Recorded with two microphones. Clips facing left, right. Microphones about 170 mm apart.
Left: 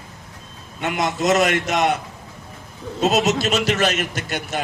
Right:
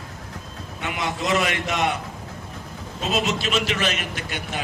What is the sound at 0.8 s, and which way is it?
Speech, 40° left (ahead or behind).